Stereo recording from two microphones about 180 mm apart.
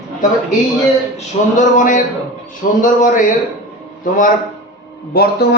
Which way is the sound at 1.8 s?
45° left (ahead or behind).